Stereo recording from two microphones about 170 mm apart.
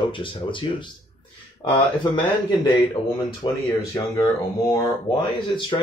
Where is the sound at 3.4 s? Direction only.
25° left (ahead or behind).